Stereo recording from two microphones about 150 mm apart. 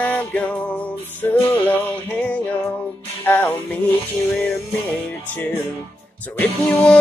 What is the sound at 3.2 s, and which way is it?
Music, 15° left (ahead or behind).